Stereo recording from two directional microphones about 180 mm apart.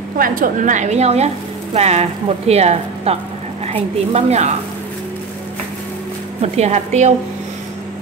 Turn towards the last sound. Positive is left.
turn(degrees=-40)  # may be behind; listen again after turning